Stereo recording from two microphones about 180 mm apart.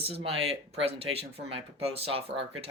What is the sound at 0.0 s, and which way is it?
Speech, 30° right (ahead or behind).